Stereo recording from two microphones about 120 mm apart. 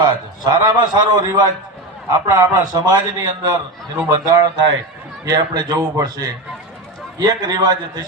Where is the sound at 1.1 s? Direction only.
25° right (ahead or behind).